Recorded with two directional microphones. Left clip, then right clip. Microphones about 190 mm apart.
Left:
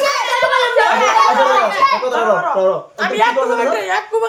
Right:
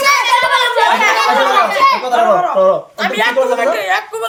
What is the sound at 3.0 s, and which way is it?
A woman's voice, 10° left (ahead or behind).